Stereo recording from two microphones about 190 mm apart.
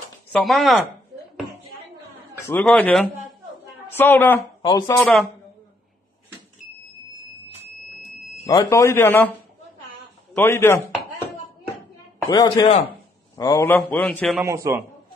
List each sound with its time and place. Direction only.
0.3 s speech: centre (ahead or behind)
2.6 s a man's voice: 5° left (ahead or behind)
8.5 s speech: 15° left (ahead or behind)
10.3 s speech: 15° left (ahead or behind)
12.3 s speech: 25° left (ahead or behind)
13.7 s speech: 10° left (ahead or behind)
14.4 s a man's voice: 15° right (ahead or behind)